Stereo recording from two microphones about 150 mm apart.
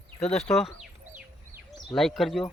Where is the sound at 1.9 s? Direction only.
Centre (ahead or behind).